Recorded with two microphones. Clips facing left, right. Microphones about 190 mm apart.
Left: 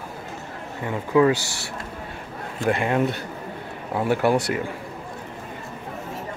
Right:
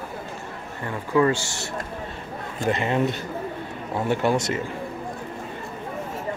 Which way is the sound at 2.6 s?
55° left (ahead or behind).